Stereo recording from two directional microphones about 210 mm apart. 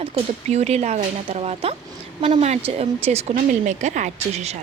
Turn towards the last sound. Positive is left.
turn(degrees=-30)  # may be behind; listen again after turning